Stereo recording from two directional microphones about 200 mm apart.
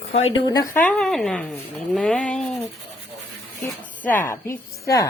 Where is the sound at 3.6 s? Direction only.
10° left (ahead or behind).